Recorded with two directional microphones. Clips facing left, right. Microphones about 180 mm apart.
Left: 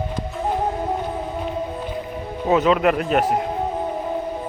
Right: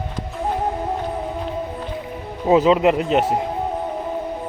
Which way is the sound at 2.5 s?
25° right (ahead or behind).